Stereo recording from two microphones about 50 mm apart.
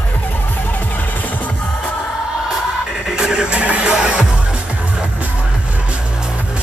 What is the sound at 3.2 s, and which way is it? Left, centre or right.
Music, centre.